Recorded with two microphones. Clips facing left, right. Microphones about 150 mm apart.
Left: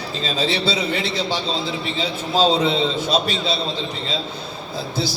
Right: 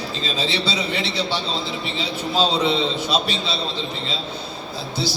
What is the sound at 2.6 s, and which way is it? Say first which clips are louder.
Speech: left 1 dB; 45° left (ahead or behind).